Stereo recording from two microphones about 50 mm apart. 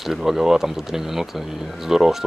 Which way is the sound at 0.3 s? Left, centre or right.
Centre.